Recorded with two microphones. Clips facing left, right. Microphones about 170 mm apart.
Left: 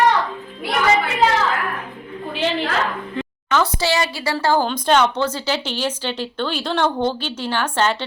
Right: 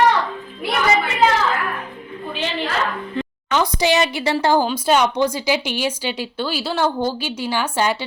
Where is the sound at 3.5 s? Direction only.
15° right (ahead or behind).